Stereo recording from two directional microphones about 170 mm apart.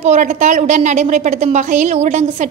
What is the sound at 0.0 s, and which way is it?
A woman's voice, 45° right (ahead or behind).